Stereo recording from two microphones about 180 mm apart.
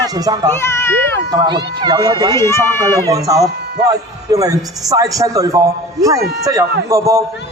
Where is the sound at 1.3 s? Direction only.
25° right (ahead or behind).